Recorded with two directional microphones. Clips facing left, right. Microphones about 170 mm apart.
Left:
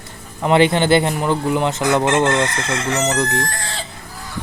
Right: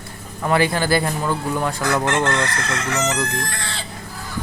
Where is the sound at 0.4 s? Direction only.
20° left (ahead or behind).